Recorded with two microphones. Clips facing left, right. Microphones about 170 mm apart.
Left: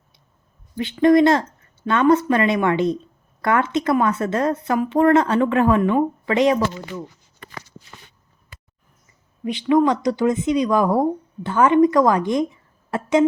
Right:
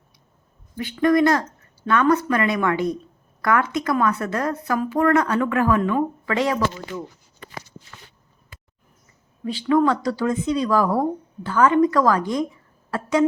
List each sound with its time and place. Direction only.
0.8 s speech: 25° left (ahead or behind)
9.4 s speech: 15° left (ahead or behind)